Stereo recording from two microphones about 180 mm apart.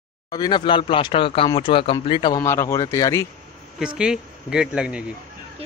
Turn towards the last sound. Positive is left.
turn(degrees=-5)  # may be behind; listen again after turning